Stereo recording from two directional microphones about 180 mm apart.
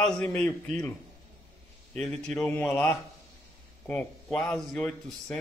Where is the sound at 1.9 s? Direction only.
5° left (ahead or behind).